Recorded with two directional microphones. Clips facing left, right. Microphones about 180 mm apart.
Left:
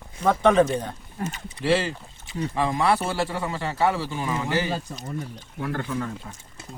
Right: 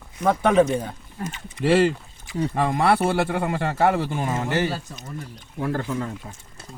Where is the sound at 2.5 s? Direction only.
55° right (ahead or behind).